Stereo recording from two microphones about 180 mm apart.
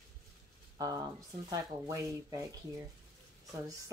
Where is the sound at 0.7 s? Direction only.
20° right (ahead or behind).